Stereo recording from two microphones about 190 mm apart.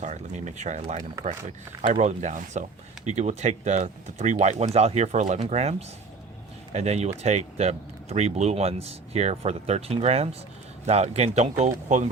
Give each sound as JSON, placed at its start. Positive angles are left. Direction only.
{"t": 0.0, "sound": "speech", "side_deg": -40}
{"t": 6.7, "sound": "speech", "side_deg": -35}